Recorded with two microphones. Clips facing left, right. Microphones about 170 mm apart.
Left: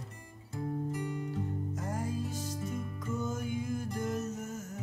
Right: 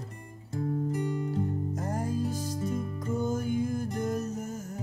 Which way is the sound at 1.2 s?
40° right (ahead or behind).